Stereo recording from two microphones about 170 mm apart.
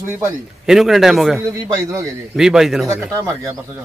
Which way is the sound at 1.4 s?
15° right (ahead or behind).